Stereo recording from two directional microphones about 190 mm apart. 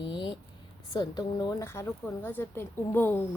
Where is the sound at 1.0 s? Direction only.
20° left (ahead or behind).